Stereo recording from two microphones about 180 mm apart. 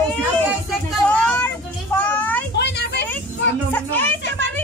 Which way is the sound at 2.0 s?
10° left (ahead or behind).